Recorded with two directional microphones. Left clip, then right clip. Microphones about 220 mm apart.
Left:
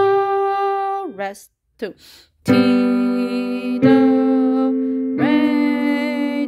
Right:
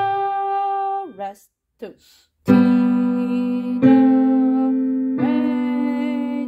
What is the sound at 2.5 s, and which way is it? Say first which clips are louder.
Music: left 1 dB; 35° left (ahead or behind).